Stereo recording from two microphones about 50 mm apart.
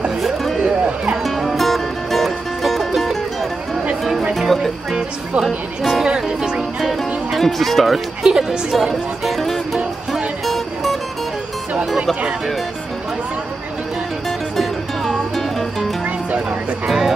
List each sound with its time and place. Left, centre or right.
1.2 s music: centre
4.2 s music: centre
4.9 s music: centre
6.8 s music: centre
8.2 s speech: centre
10.4 s music: centre
14.6 s music: centre